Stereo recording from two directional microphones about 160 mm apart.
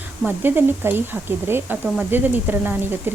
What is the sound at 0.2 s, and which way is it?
Speech, 10° right (ahead or behind).